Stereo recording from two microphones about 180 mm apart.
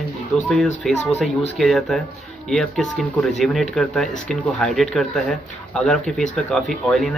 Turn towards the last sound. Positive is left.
turn(degrees=0)  # may be behind; listen again after turning